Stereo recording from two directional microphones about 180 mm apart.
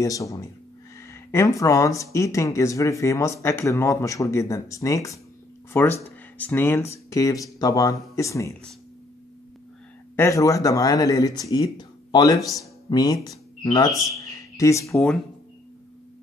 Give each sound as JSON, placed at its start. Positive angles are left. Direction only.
{"t": 0.0, "sound": "speech", "side_deg": 20}
{"t": 10.1, "sound": "speech", "side_deg": 15}